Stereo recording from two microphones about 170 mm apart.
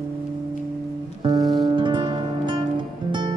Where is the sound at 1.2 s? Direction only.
20° right (ahead or behind).